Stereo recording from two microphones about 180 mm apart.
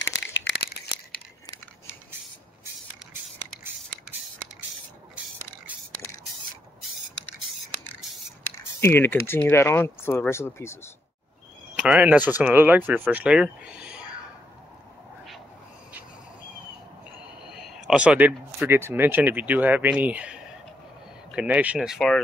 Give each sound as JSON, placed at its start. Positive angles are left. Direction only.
{"t": 0.0, "sound": "a sound", "side_deg": 85}
{"t": 8.8, "sound": "speech", "side_deg": 15}
{"t": 11.8, "sound": "speech", "side_deg": -5}
{"t": 17.2, "sound": "speech", "side_deg": -5}